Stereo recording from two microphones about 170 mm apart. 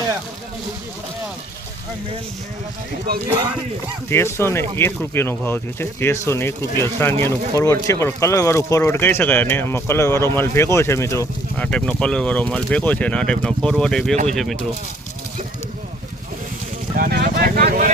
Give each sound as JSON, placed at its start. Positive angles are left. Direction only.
{"t": 4.1, "sound": "speech", "side_deg": 15}
{"t": 17.0, "sound": "vehicle", "side_deg": -65}